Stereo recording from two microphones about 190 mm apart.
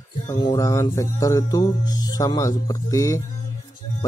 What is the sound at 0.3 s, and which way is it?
Music, 20° left (ahead or behind).